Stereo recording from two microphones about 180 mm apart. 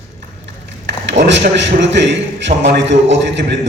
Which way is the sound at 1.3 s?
80° right.